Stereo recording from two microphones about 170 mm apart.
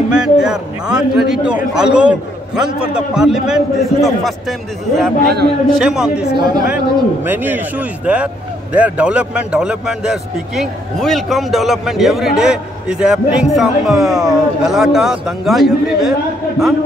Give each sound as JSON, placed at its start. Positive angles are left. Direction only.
{"t": 0.1, "sound": "a man's voice", "side_deg": -5}
{"t": 6.3, "sound": "speech", "side_deg": -25}
{"t": 7.2, "sound": "a man's voice", "side_deg": -10}